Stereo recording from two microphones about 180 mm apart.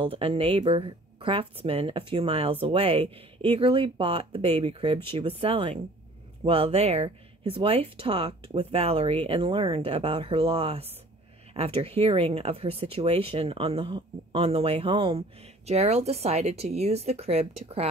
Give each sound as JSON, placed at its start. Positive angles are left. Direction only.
{"t": 0.0, "sound": "speech", "side_deg": -30}